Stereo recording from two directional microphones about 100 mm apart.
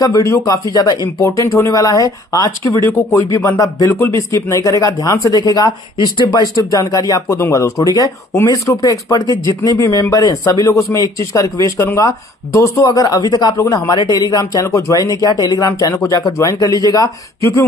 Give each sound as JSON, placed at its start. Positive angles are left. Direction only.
{"t": 0.0, "sound": "speech", "side_deg": 35}